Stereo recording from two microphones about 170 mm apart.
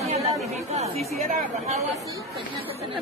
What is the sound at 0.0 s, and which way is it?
Chatter, 40° right (ahead or behind).